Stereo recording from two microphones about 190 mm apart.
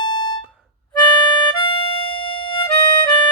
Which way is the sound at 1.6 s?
25° left (ahead or behind).